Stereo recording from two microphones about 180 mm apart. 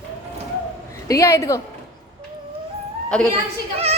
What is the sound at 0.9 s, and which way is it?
Speech, 20° left (ahead or behind).